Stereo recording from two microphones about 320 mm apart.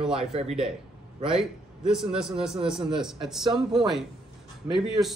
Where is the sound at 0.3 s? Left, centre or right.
Centre.